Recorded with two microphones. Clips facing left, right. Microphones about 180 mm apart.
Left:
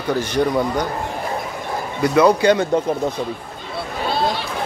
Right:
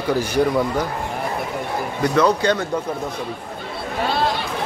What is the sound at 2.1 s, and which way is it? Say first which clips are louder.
Speech: left 4 dB; 10° left (ahead or behind).